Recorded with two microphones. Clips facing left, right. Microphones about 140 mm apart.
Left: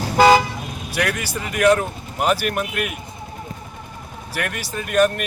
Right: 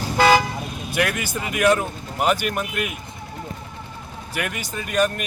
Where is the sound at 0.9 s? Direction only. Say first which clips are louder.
Even; 5° right (ahead or behind).